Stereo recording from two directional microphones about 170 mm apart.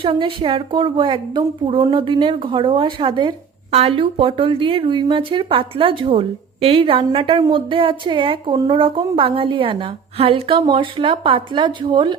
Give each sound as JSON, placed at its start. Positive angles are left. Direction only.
{"t": 0.0, "sound": "a woman's voice", "side_deg": -30}